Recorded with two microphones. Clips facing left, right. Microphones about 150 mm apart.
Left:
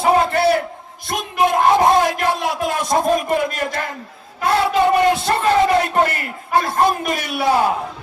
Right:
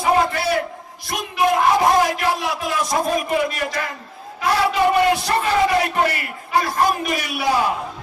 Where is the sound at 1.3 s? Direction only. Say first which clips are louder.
Left 2 dB; 50° left (ahead or behind).